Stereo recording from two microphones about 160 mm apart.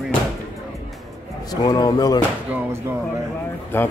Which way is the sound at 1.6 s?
25° left (ahead or behind).